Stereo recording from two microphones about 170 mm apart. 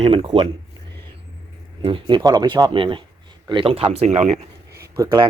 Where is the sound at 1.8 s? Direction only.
30° right (ahead or behind).